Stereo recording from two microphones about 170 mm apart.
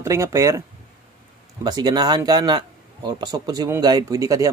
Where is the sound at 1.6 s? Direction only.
25° right (ahead or behind).